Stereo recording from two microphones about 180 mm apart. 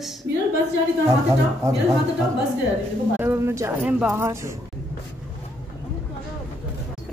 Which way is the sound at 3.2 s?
15° right (ahead or behind).